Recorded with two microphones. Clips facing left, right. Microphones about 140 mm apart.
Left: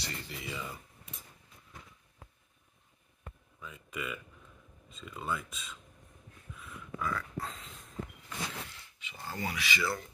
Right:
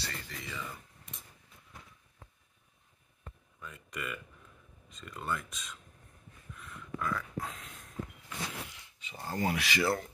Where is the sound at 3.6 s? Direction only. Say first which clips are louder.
Left 1 dB; centre (ahead or behind).